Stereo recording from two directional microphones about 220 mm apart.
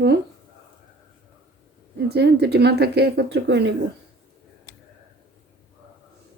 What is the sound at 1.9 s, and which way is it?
Speech, 50° right (ahead or behind).